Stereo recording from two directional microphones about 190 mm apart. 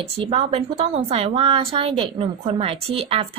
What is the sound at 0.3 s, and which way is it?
A woman's voice, 30° right (ahead or behind).